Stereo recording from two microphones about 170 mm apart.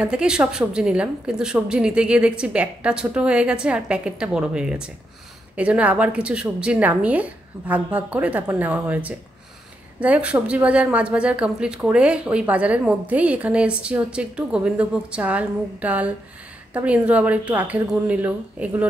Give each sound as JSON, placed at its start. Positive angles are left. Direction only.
{"t": 0.0, "sound": "a woman's voice", "side_deg": -5}